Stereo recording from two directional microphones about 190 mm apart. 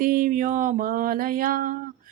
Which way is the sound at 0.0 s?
45° right (ahead or behind).